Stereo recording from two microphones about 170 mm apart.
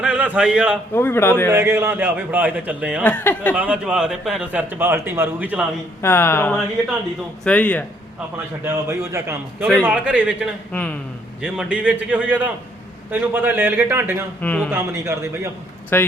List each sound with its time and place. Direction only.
0.0 s a man's voice: 5° right (ahead or behind)
0.9 s speech: 15° left (ahead or behind)
1.5 s a man's voice: 15° right (ahead or behind)
3.0 s speech: 10° left (ahead or behind)
3.5 s a man's voice: 5° right (ahead or behind)
6.0 s speech: 15° left (ahead or behind)
8.6 s a man's voice: 15° right (ahead or behind)
10.7 s speech: 5° left (ahead or behind)
11.4 s a man's voice: 5° right (ahead or behind)
14.4 s speech: 5° left (ahead or behind)
14.7 s a man's voice: 15° right (ahead or behind)
15.9 s speech: 15° left (ahead or behind)